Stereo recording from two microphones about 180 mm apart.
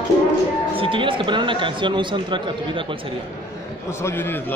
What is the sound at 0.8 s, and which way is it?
Speech, 30° right (ahead or behind).